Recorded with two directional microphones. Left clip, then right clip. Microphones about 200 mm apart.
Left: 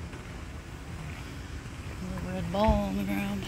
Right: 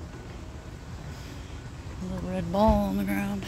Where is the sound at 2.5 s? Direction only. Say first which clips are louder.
Right 3 dB; 30° right (ahead or behind).